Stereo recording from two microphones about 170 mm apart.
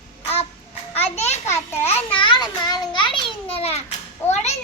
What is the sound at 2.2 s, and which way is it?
A child's voice, 25° left (ahead or behind).